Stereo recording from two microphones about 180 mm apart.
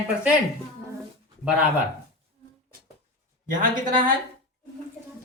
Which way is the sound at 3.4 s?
50° right (ahead or behind).